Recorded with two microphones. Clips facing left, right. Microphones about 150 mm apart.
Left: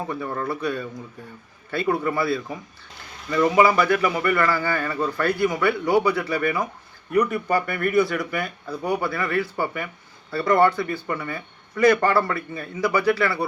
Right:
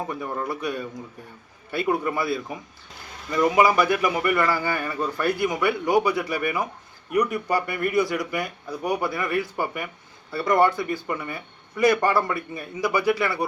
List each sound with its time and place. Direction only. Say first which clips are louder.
0.1 s a man's voice: left 2 dB; 15° right (ahead or behind)